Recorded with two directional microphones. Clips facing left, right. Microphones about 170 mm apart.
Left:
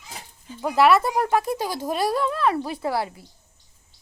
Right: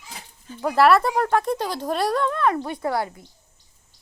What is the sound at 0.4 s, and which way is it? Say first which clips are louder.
Speech: right 1 dB; 10° left (ahead or behind).